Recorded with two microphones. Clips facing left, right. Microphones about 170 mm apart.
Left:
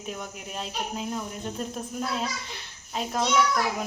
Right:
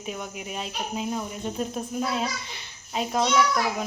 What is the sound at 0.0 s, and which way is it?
Speech, 5° right (ahead or behind).